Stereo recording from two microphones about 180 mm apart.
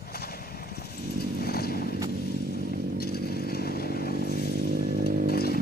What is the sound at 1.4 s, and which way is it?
Horse, 60° left (ahead or behind).